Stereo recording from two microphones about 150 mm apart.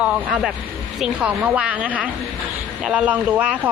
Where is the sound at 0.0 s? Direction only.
Centre (ahead or behind).